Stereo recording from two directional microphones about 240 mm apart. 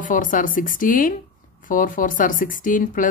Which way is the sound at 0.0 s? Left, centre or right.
Left.